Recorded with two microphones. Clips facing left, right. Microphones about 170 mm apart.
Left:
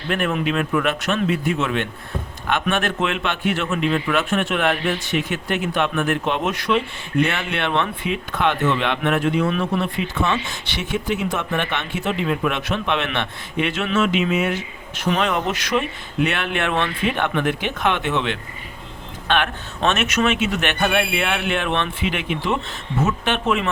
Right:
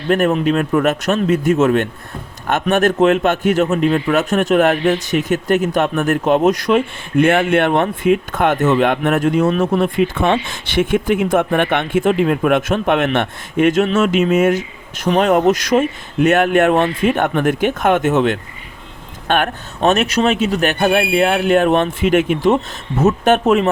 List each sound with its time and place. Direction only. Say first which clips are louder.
0.1 s a man's voice: right 7 dB; 40° right (ahead or behind)